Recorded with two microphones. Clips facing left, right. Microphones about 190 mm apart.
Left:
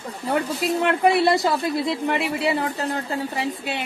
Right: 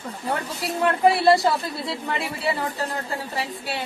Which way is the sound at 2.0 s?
20° left (ahead or behind).